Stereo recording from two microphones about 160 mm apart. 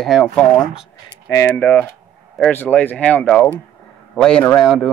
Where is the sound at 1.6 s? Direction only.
10° left (ahead or behind).